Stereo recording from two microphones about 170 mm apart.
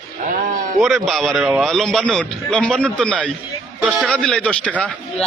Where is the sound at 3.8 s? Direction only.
10° right (ahead or behind).